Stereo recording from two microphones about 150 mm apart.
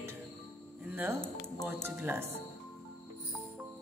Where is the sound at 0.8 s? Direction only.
15° right (ahead or behind).